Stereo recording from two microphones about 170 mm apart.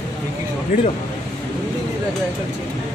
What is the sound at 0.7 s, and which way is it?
Speech, 50° left (ahead or behind).